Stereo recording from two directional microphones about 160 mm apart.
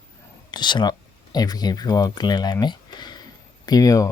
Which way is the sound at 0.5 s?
30° left (ahead or behind).